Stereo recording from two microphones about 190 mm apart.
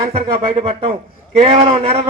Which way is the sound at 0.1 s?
30° right (ahead or behind).